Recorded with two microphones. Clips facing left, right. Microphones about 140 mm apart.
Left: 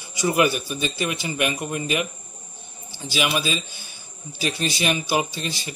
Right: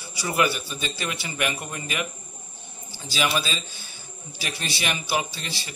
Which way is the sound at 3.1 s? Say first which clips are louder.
Left 2 dB; 15° left (ahead or behind).